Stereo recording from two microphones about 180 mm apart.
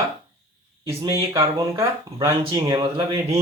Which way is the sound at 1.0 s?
20° right (ahead or behind).